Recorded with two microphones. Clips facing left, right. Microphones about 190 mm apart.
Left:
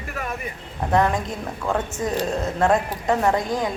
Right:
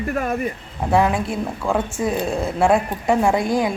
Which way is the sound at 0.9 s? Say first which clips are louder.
Right 2 dB; 10° right (ahead or behind).